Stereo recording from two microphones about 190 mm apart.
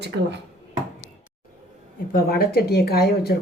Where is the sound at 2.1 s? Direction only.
50° left (ahead or behind).